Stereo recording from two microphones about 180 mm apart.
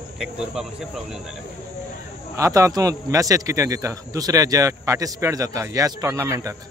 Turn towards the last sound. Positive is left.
turn(degrees=-20)  # may be behind; listen again after turning